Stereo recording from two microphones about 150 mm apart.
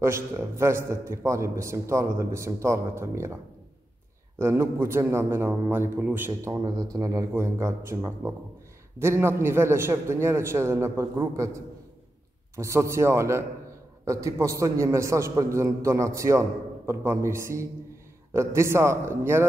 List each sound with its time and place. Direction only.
0.0 s a man's voice: 15° right (ahead or behind)
4.4 s a man's voice: 15° right (ahead or behind)
6.5 s a man's voice: 25° right (ahead or behind)
12.5 s a man's voice: 20° right (ahead or behind)